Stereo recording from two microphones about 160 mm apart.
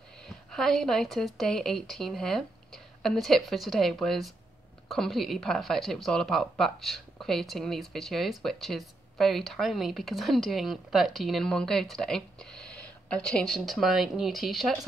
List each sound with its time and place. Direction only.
0.6 s speech: centre (ahead or behind)